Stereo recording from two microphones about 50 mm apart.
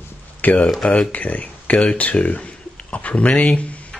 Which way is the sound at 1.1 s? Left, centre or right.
Left.